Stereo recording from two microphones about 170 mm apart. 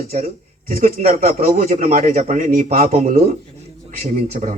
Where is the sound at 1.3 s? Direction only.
55° right (ahead or behind).